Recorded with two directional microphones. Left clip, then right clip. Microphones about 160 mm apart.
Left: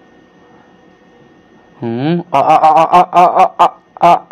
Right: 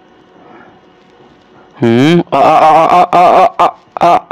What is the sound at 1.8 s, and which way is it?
Speech, 30° right (ahead or behind).